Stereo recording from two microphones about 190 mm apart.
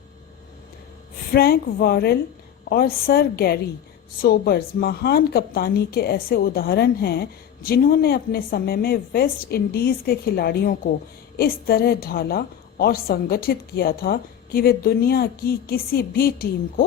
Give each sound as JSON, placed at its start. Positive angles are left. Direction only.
{"t": 1.3, "sound": "a woman's voice", "side_deg": 55}